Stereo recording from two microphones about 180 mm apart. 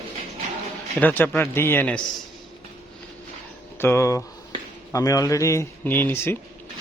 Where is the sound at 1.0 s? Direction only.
10° left (ahead or behind).